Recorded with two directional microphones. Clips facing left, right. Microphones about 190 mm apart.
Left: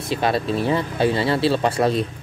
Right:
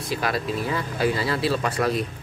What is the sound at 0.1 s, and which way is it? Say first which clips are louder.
Speech: left 5 dB; 25° left (ahead or behind).